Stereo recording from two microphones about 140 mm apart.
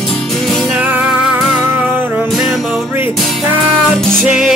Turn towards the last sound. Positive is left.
turn(degrees=-5)  # may be behind; listen again after turning